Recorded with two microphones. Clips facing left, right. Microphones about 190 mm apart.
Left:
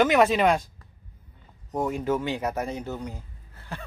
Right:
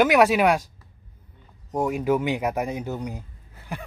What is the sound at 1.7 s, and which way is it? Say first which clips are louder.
Speech: right 3 dB; 10° right (ahead or behind).